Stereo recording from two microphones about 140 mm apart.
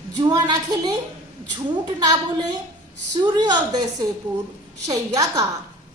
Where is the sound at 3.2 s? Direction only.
30° right (ahead or behind).